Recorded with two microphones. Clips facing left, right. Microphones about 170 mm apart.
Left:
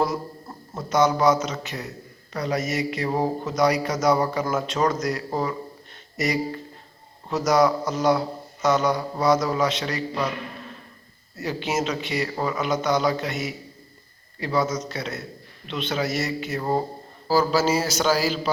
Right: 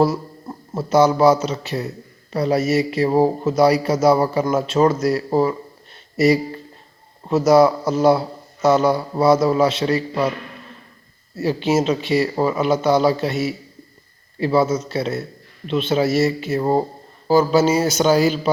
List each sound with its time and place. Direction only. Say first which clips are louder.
0.8 s speech: right 6 dB; 30° right (ahead or behind)
11.3 s a man's voice: right 8 dB; 30° right (ahead or behind)